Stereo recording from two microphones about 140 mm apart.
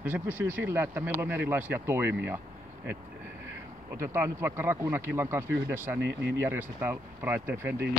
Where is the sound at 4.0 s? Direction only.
20° right (ahead or behind).